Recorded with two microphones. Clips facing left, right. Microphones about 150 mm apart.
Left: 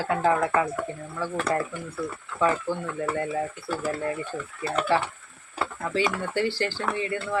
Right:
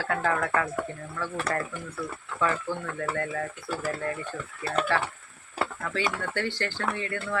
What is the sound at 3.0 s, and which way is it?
Speech, 15° left (ahead or behind).